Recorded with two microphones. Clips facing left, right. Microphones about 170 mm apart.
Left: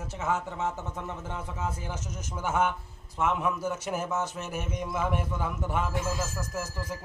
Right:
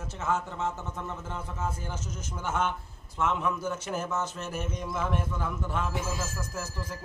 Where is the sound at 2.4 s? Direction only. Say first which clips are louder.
Left 3 dB; 10° left (ahead or behind).